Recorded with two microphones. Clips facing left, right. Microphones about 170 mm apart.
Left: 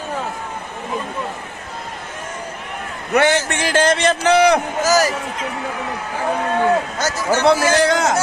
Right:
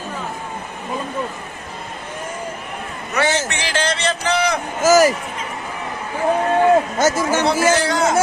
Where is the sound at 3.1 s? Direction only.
55° left (ahead or behind).